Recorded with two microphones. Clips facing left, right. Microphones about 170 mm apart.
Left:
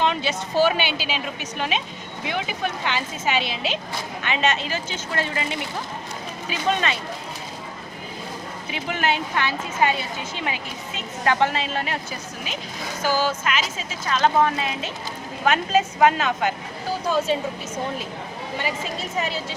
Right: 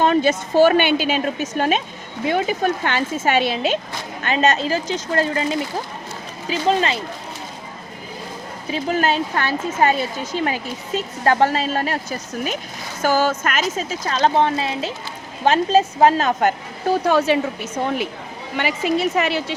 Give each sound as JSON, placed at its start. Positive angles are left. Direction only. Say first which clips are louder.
{"t": 0.0, "sound": "a woman's voice", "louder": "right 7 dB", "side_deg": -45}
{"t": 8.7, "sound": "speech", "louder": "right 5 dB", "side_deg": -40}
{"t": 13.0, "sound": "speech", "louder": "right 5 dB", "side_deg": -45}
{"t": 17.0, "sound": "a woman's voice", "louder": "right 4 dB", "side_deg": -70}